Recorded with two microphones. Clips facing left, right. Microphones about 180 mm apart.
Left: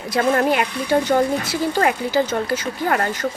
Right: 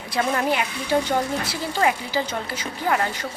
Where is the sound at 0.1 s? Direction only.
50° left (ahead or behind).